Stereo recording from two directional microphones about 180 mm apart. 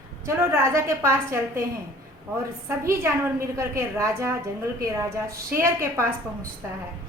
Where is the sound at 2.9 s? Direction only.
15° right (ahead or behind).